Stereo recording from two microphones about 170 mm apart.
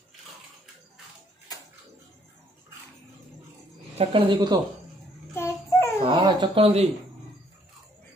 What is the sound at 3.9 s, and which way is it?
Speech, 35° right (ahead or behind).